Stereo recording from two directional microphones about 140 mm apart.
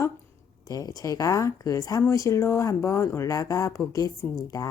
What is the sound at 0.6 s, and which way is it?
Speech, 25° left (ahead or behind).